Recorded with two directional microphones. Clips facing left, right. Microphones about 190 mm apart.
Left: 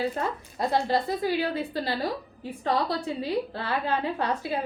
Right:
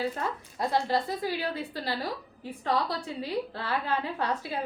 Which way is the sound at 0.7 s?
20° left (ahead or behind).